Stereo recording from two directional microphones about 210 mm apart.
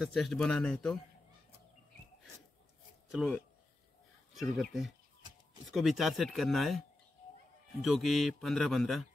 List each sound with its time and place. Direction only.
0.0 s a man's voice: centre (ahead or behind)
3.1 s a man's voice: centre (ahead or behind)
7.8 s a man's voice: centre (ahead or behind)